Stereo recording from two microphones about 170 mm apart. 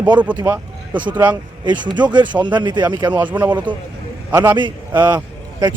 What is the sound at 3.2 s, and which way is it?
Speech, 10° right (ahead or behind).